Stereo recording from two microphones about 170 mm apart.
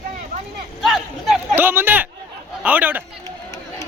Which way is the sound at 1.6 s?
10° right (ahead or behind).